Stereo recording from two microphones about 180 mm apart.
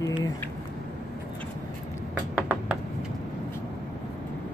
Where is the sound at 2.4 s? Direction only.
10° right (ahead or behind).